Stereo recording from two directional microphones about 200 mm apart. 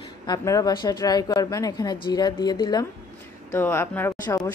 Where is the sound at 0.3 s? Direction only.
20° left (ahead or behind).